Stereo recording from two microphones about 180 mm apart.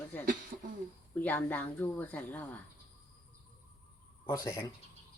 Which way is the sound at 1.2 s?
10° left (ahead or behind).